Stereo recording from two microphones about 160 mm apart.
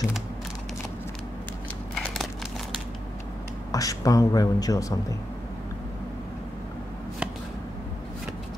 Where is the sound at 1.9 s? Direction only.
5° left (ahead or behind).